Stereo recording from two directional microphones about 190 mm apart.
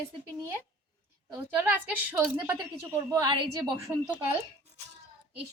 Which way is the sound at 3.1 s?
20° right (ahead or behind).